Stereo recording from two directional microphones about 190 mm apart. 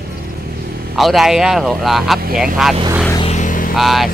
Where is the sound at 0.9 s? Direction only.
Centre (ahead or behind).